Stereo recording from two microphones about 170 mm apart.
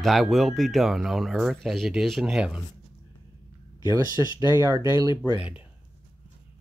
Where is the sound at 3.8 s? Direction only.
25° left (ahead or behind).